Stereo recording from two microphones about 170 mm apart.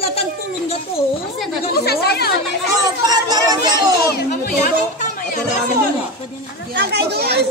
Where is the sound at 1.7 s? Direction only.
70° left (ahead or behind).